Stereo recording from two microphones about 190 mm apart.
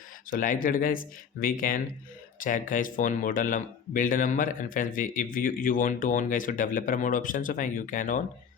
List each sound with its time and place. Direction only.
0.3 s speech: 45° left (ahead or behind)